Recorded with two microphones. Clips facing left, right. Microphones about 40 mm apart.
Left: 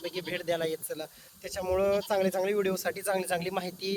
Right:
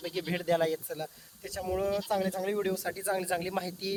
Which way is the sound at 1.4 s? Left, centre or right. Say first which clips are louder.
Left 4 dB; left.